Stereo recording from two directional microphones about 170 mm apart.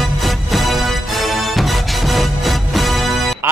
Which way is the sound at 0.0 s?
Centre (ahead or behind).